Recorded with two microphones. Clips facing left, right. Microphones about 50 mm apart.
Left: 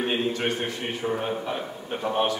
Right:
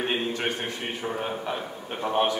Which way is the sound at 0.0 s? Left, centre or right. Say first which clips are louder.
Left 2 dB; centre.